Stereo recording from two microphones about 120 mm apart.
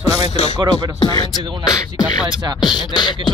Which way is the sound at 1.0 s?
35° left (ahead or behind).